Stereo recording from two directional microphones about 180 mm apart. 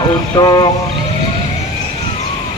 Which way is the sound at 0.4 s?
25° left (ahead or behind).